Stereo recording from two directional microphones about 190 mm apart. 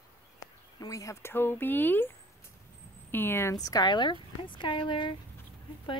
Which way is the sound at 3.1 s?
10° left (ahead or behind).